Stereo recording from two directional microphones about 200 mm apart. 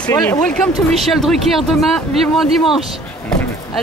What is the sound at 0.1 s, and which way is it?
Speech, 15° left (ahead or behind).